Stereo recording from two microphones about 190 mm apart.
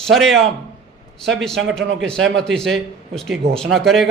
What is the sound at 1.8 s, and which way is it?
Speech, 75° right (ahead or behind).